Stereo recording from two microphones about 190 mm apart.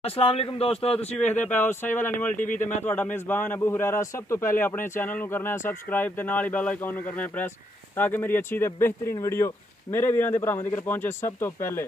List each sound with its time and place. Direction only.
0.0 s speech: 30° left (ahead or behind)
0.9 s a man's voice: 5° left (ahead or behind)
2.3 s speech: 45° left (ahead or behind)
2.8 s a man's voice: 10° left (ahead or behind)